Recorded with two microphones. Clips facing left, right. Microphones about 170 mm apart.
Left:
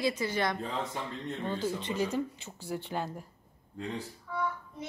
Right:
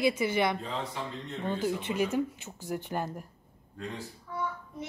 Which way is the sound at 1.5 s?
15° right (ahead or behind).